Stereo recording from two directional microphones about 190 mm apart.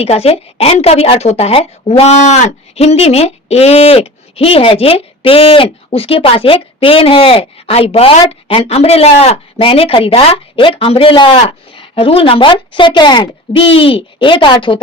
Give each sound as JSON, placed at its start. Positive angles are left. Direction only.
{"t": 0.0, "sound": "a woman's voice", "side_deg": 35}